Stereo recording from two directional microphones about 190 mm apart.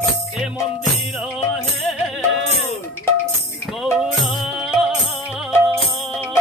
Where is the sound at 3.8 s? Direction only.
5° right (ahead or behind).